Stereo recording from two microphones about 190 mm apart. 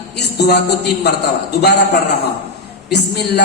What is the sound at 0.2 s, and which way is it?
Music, 60° left (ahead or behind).